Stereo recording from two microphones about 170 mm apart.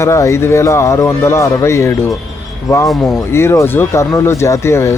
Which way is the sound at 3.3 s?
15° left (ahead or behind).